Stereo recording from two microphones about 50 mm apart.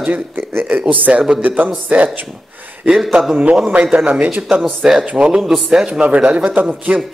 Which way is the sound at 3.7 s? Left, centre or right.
Right.